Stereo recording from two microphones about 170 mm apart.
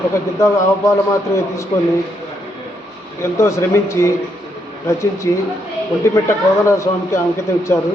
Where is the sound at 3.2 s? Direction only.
15° left (ahead or behind).